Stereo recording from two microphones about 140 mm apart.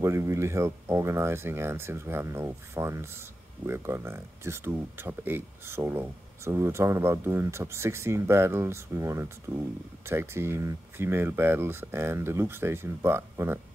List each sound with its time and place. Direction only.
0.0 s speech: 20° right (ahead or behind)